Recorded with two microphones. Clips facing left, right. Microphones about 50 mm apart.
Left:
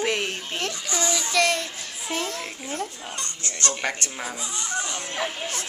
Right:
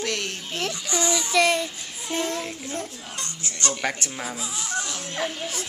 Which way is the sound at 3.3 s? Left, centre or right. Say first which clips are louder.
Right 1 dB; centre.